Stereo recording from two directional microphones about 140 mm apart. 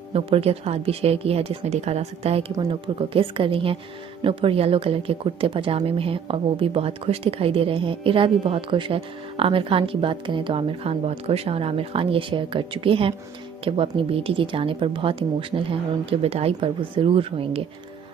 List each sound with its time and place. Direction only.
0.1 s a woman's voice: 45° right (ahead or behind)